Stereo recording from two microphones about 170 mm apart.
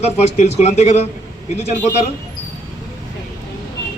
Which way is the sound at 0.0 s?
40° left (ahead or behind).